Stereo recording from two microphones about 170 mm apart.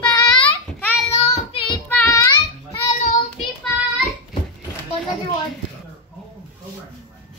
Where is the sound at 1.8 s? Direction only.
10° left (ahead or behind).